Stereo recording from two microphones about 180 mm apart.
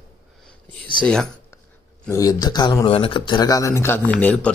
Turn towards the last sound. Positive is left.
turn(degrees=10)  # may be behind; listen again after turning